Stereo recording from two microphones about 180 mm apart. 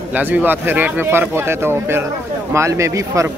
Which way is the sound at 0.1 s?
10° right (ahead or behind).